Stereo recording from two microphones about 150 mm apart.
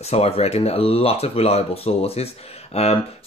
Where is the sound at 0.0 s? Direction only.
45° left (ahead or behind).